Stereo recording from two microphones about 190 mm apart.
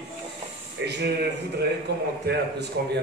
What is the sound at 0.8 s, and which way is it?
Speech, 65° right (ahead or behind).